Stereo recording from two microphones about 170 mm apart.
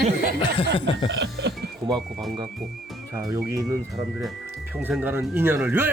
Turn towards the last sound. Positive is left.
turn(degrees=-10)  # may be behind; listen again after turning